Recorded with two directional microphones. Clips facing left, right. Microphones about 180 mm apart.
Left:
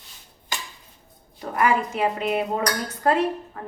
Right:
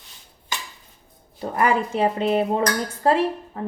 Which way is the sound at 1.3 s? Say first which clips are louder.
Right 1 dB; 30° right (ahead or behind).